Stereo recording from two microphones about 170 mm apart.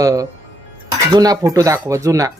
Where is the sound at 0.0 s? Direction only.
20° right (ahead or behind).